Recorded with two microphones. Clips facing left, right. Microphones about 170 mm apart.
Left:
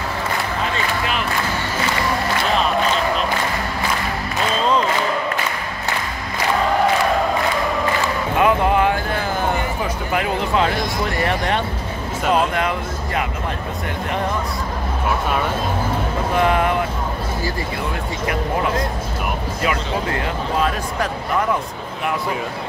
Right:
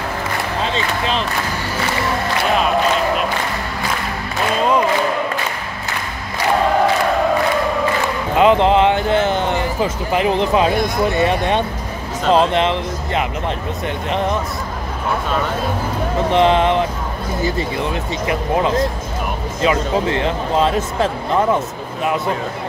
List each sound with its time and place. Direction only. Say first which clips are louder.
8.4 s a sound: right 4 dB; 20° right (ahead or behind)
10.1 s speech: right 4 dB; 20° right (ahead or behind)
16.3 s speech: right 4 dB; 25° right (ahead or behind)